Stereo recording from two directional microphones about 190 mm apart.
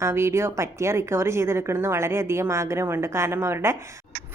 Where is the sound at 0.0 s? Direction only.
15° right (ahead or behind).